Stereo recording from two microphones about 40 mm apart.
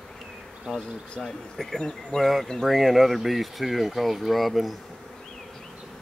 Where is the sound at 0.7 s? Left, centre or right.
Centre.